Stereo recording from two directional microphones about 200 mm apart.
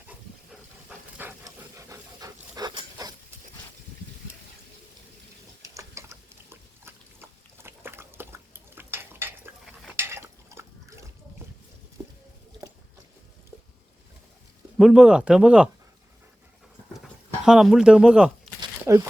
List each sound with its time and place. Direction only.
0.9 s pant: 15° right (ahead or behind)
5.6 s pig: 15° right (ahead or behind)
9.9 s a sound: 15° right (ahead or behind)
14.8 s speech: 5° right (ahead or behind)
17.4 s speech: centre (ahead or behind)
18.6 s crumpling: 15° right (ahead or behind)